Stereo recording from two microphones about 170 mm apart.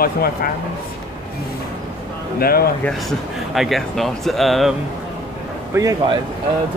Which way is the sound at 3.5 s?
Centre (ahead or behind).